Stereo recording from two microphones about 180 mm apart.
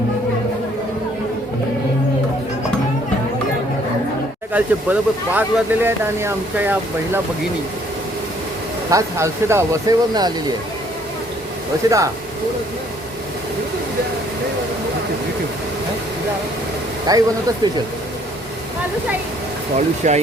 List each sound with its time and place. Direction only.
4.5 s speech: 10° right (ahead or behind)
8.9 s speech: 15° right (ahead or behind)
11.8 s speech: 20° right (ahead or behind)
17.1 s speech: 25° right (ahead or behind)
20.0 s speech: 45° right (ahead or behind)